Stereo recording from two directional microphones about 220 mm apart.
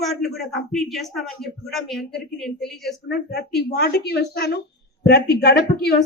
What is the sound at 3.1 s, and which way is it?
A woman's voice, 45° left (ahead or behind).